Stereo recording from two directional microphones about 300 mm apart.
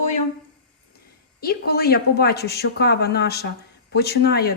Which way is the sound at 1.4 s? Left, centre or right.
Left.